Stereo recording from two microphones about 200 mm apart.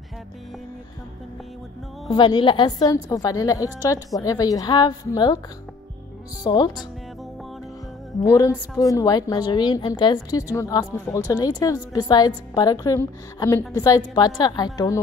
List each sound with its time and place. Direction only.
2.0 s a woman's voice: 25° left (ahead or behind)
6.4 s a woman's voice: 20° left (ahead or behind)
8.3 s a woman's voice: 15° left (ahead or behind)